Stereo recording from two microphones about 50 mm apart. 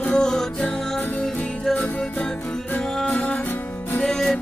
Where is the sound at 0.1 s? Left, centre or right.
Centre.